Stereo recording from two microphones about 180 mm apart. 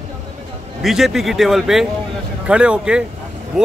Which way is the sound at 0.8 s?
Centre (ahead or behind).